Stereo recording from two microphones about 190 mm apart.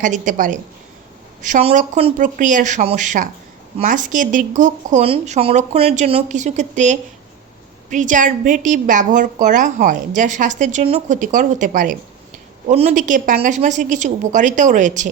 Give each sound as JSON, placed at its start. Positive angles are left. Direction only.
{"t": 0.0, "sound": "a woman's voice", "side_deg": -40}